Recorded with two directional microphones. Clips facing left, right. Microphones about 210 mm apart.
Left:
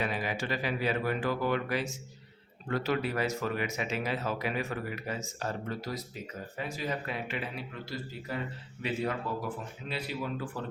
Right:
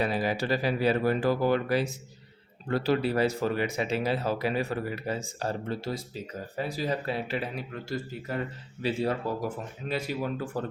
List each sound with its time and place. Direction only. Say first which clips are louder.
0.0 s speech: right 5 dB; 35° right (ahead or behind)
8.8 s speech: right 4 dB; 30° right (ahead or behind)
9.9 s speech: right 5 dB; 45° right (ahead or behind)